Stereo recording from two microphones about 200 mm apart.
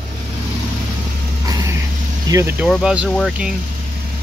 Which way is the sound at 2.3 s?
15° right (ahead or behind).